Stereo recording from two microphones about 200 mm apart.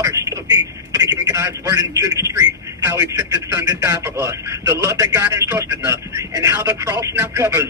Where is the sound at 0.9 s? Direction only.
15° right (ahead or behind).